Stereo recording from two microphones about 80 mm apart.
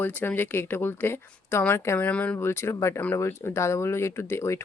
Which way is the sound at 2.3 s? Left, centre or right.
Left.